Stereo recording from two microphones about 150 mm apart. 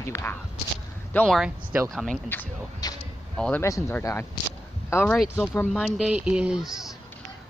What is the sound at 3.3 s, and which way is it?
Speech, 5° left (ahead or behind).